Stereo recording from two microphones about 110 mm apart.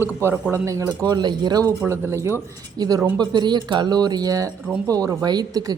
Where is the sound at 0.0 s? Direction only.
20° right (ahead or behind); by 1.7 s 35° right (ahead or behind).